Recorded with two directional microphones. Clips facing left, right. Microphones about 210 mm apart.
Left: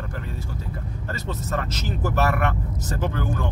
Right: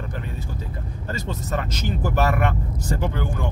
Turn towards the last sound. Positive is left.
turn(degrees=-15)  # may be behind; listen again after turning